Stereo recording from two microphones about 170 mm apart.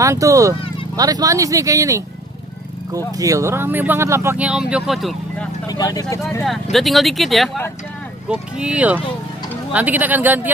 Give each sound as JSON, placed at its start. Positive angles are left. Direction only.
{"t": 0.0, "sound": "speech", "side_deg": -20}
{"t": 5.7, "sound": "speech", "side_deg": 20}
{"t": 6.4, "sound": "speech", "side_deg": 0}